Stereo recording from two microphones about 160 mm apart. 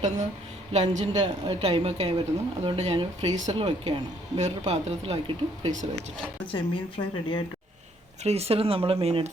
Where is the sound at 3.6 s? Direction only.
30° right (ahead or behind).